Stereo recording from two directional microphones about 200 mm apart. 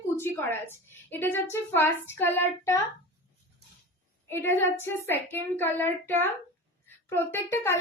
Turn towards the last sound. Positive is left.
turn(degrees=10)  # may be behind; listen again after turning